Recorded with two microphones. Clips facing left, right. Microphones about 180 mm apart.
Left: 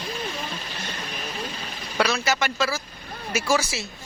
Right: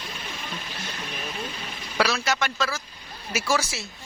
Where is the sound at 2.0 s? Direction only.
Centre (ahead or behind).